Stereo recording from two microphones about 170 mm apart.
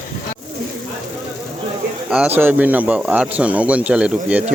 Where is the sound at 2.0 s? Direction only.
5° right (ahead or behind).